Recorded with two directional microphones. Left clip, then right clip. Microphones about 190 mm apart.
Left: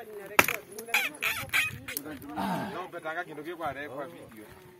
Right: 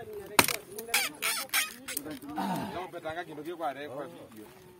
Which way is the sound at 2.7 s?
10° left (ahead or behind).